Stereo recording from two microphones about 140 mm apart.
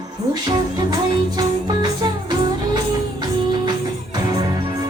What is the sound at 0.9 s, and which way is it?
Music, 30° right (ahead or behind).